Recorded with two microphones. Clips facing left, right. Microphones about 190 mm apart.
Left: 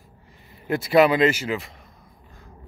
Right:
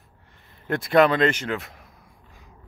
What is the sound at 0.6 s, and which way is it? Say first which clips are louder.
A man's voice: left 1 dB; 5° left (ahead or behind).